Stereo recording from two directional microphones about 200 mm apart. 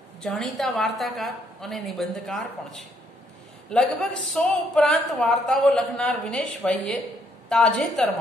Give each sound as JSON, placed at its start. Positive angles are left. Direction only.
{"t": 0.2, "sound": "speech", "side_deg": 0}